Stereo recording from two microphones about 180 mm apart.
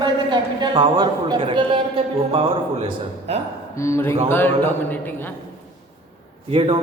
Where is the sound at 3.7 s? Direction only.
15° left (ahead or behind).